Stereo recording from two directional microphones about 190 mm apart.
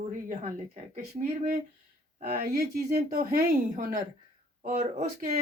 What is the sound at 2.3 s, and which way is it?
Speech, 55° right (ahead or behind).